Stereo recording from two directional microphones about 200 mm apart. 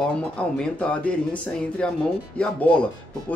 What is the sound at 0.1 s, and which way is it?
Speech, 5° left (ahead or behind).